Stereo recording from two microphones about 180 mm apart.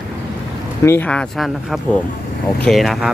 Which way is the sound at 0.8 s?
10° left (ahead or behind).